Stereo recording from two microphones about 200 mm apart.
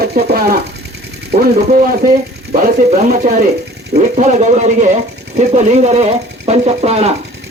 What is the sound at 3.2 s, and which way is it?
Speech, 45° right (ahead or behind).